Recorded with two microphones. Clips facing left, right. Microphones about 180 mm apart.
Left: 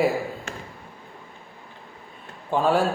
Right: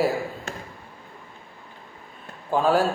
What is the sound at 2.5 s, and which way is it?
Speech, centre (ahead or behind).